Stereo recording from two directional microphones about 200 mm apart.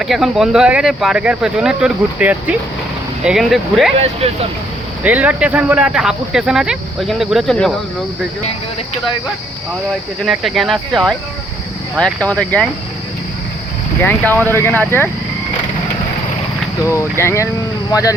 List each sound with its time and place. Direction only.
0.0 s speech: centre (ahead or behind)
3.9 s speech: 30° right (ahead or behind)
5.0 s speech: 5° right (ahead or behind)
10.2 s speech: centre (ahead or behind)
14.0 s speech: 10° left (ahead or behind)
16.9 s speech: 15° left (ahead or behind)